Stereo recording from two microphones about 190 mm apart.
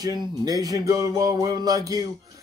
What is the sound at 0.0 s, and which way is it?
Music, 20° right (ahead or behind).